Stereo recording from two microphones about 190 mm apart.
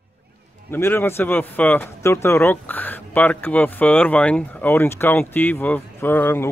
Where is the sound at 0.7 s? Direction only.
10° left (ahead or behind).